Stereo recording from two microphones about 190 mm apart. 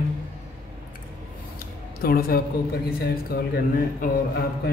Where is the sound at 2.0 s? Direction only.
50° left (ahead or behind).